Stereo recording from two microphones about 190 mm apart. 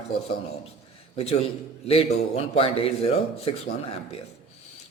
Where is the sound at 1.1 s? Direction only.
35° left (ahead or behind).